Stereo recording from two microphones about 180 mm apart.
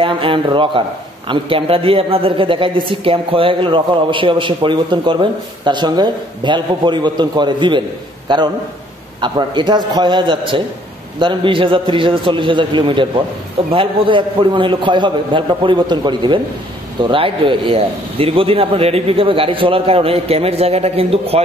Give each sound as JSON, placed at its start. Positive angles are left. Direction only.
{"t": 0.0, "sound": "a man's voice", "side_deg": -30}